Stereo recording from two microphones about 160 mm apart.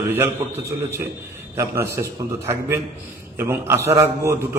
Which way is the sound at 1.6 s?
20° right (ahead or behind).